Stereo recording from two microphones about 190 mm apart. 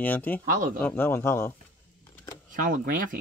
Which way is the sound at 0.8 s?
10° left (ahead or behind).